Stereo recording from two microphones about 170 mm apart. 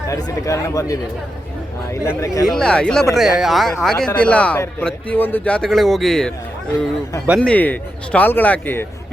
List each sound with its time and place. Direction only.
0.1 s a man's voice: 20° left (ahead or behind)
2.5 s a man's voice: 5° left (ahead or behind)